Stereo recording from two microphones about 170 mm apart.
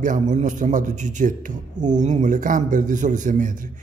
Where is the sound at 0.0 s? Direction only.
50° right (ahead or behind).